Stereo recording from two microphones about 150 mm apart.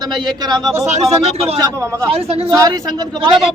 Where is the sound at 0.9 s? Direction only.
45° right (ahead or behind).